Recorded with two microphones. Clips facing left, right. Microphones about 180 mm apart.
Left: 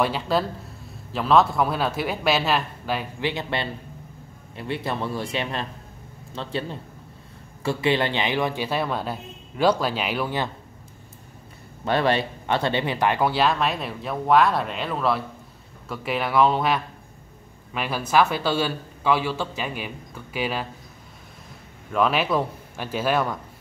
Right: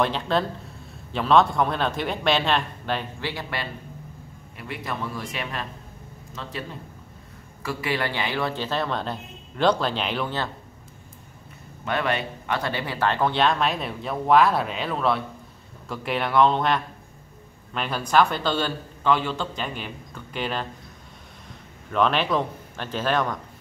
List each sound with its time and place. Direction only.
0.0 s speech: 5° left (ahead or behind)
3.2 s a man's voice: 20° left (ahead or behind)
11.8 s speech: 30° left (ahead or behind); by 20.6 s 5° left (ahead or behind)
21.9 s speech: 5° left (ahead or behind)